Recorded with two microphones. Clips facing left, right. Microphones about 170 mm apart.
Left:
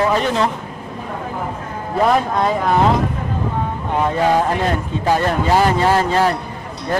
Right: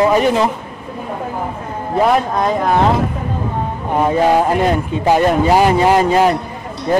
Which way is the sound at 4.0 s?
10° right (ahead or behind).